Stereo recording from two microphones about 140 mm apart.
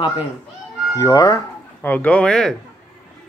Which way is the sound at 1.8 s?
10° left (ahead or behind).